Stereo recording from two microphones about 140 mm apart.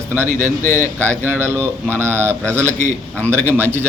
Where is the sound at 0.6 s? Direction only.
20° left (ahead or behind).